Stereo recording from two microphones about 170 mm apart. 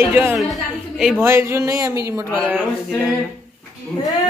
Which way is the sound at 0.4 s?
Centre (ahead or behind).